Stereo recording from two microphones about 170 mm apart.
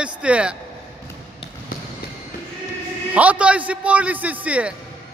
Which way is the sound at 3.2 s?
10° right (ahead or behind).